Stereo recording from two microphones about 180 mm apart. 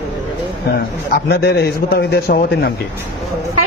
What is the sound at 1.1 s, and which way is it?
A man's voice, 65° left (ahead or behind).